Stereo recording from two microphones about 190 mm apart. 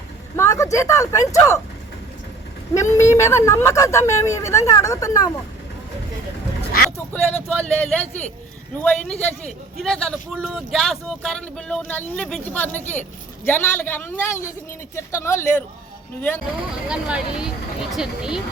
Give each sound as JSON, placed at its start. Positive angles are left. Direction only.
{"t": 0.3, "sound": "a woman's voice", "side_deg": 15}
{"t": 2.7, "sound": "a woman's voice", "side_deg": 15}
{"t": 6.9, "sound": "a woman's voice", "side_deg": 5}
{"t": 16.9, "sound": "speech", "side_deg": -5}